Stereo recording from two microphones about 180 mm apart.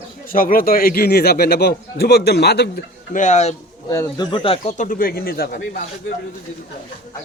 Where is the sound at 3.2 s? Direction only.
40° left (ahead or behind).